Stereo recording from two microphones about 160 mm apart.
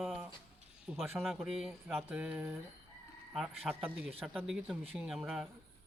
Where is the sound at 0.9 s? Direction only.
10° right (ahead or behind).